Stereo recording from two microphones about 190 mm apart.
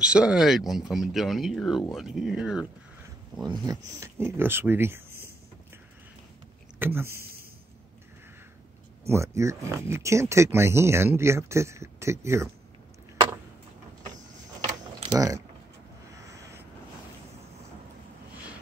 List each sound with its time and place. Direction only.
0.0 s speech: 5° right (ahead or behind)
3.4 s speech: 20° right (ahead or behind)
6.8 s speech: 10° right (ahead or behind)
9.0 s speech: 15° right (ahead or behind)
15.1 s speech: 20° right (ahead or behind)